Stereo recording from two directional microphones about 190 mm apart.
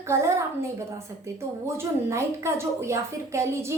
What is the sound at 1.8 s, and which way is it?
A woman's voice, 15° right (ahead or behind).